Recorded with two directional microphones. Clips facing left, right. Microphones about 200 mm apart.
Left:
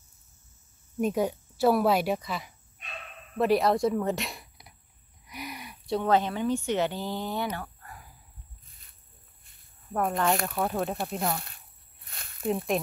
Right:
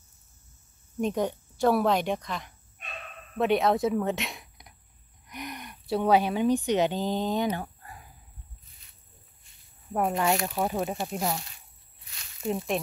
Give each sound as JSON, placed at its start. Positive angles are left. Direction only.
{"t": 1.0, "sound": "a woman's voice", "side_deg": 5}
{"t": 5.2, "sound": "a sound", "side_deg": 5}
{"t": 5.9, "sound": "speech", "side_deg": -10}
{"t": 9.9, "sound": "speech", "side_deg": -10}
{"t": 10.5, "sound": "a woman's voice", "side_deg": 0}
{"t": 11.4, "sound": "a sound", "side_deg": 55}
{"t": 12.4, "sound": "a woman's voice", "side_deg": 0}